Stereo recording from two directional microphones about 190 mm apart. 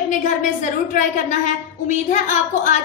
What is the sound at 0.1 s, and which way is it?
A woman's voice, 45° left (ahead or behind).